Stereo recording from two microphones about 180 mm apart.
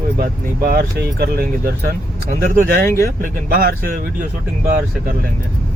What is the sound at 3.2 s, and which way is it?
Speech, 55° right (ahead or behind).